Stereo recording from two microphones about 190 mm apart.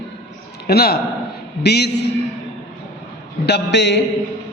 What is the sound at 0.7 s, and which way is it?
A man's voice, 55° left (ahead or behind).